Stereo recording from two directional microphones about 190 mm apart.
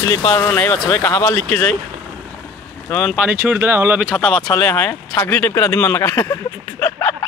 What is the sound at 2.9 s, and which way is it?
Speech, 5° left (ahead or behind).